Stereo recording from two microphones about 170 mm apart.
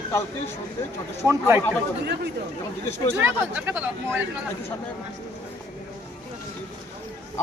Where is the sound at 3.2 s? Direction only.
10° right (ahead or behind).